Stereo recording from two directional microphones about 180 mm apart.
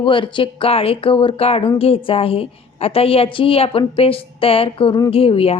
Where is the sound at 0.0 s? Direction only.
30° left (ahead or behind).